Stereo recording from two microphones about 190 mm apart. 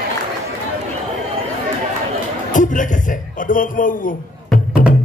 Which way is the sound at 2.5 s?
40° left (ahead or behind).